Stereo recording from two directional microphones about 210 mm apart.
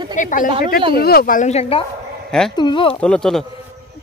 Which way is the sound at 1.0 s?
45° left (ahead or behind).